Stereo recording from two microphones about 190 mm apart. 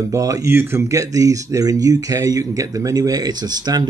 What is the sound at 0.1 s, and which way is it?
Speech, 15° right (ahead or behind).